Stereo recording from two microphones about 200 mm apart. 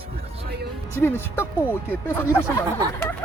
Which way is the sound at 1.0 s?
10° left (ahead or behind).